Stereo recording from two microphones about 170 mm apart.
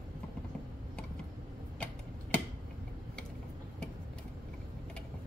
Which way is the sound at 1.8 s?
5° left (ahead or behind).